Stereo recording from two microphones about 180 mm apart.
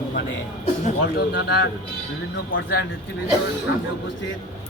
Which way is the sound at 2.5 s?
55° left (ahead or behind).